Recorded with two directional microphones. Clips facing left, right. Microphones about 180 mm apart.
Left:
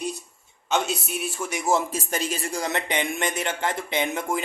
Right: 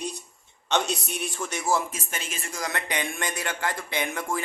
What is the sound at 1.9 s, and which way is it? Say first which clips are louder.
A man's voice: left 8 dB; 35° left (ahead or behind).